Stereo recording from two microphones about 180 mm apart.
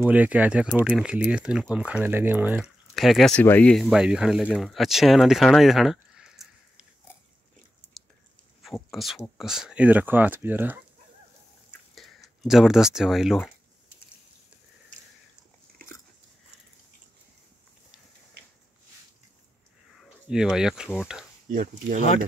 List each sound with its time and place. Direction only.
0.0 s speech: 10° right (ahead or behind); by 3.8 s 5° left (ahead or behind)
3.8 s speech: 5° right (ahead or behind)
8.6 s speech: centre (ahead or behind)
11.9 s speech: centre (ahead or behind)
20.0 s speech: 5° right (ahead or behind)
21.5 s speech: 50° right (ahead or behind)